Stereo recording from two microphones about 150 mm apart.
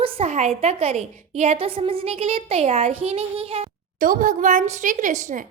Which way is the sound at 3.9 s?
65° right (ahead or behind).